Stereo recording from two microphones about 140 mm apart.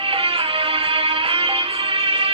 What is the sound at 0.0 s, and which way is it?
Music, 40° right (ahead or behind).